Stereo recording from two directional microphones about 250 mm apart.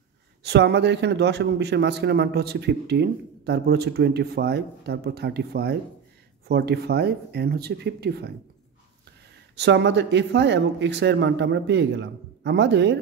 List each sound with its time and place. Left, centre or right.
0.4 s a man's voice: right
9.6 s speech: right